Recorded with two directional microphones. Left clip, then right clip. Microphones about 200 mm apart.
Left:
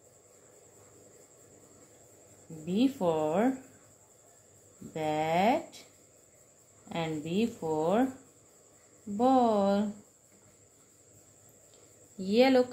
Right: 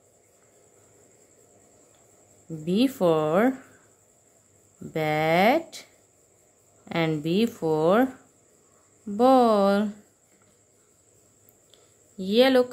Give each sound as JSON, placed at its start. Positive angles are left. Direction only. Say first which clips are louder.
{"t": 2.6, "sound": "speech", "louder": "right 6 dB", "side_deg": -40}
{"t": 4.9, "sound": "speech", "louder": "right 6 dB", "side_deg": -35}
{"t": 6.9, "sound": "speech", "louder": "right 9 dB", "side_deg": -40}
{"t": 9.1, "sound": "speech", "louder": "right 7 dB", "side_deg": -40}
{"t": 12.2, "sound": "speech", "louder": "right 5 dB", "side_deg": -25}